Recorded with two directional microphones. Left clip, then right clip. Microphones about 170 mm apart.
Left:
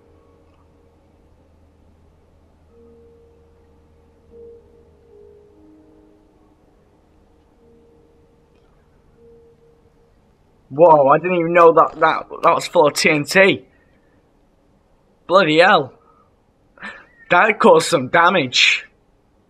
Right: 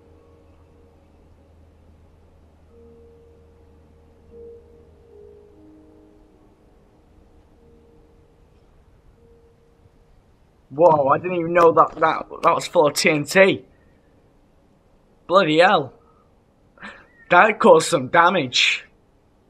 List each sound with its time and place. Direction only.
11.0 s a man's voice: 5° left (ahead or behind)
11.5 s speech: 15° left (ahead or behind)
12.2 s speech: 5° left (ahead or behind)
15.2 s speech: 15° left (ahead or behind)